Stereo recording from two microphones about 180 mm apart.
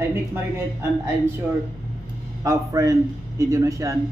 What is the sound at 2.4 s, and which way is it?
Speech, 20° right (ahead or behind).